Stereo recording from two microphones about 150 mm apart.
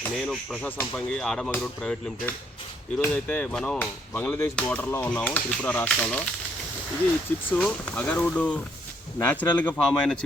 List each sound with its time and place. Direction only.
0.2 s speech: centre (ahead or behind)
7.5 s speech: 10° left (ahead or behind)